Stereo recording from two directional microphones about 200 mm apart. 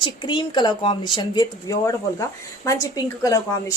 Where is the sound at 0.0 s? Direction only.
25° left (ahead or behind).